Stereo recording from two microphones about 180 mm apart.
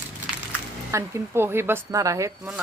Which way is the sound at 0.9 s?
15° right (ahead or behind).